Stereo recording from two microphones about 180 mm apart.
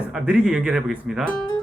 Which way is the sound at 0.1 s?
5° right (ahead or behind).